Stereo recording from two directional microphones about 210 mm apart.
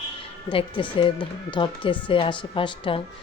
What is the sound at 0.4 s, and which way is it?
A woman's voice, 25° left (ahead or behind).